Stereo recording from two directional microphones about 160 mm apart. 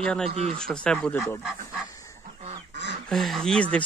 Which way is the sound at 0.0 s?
5° left (ahead or behind).